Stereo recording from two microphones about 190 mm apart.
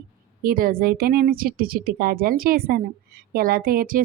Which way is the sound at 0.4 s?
50° right (ahead or behind).